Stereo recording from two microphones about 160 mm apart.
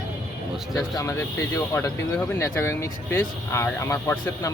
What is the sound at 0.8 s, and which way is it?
Speech, 20° left (ahead or behind).